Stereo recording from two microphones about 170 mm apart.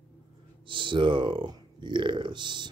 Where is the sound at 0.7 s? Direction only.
30° right (ahead or behind).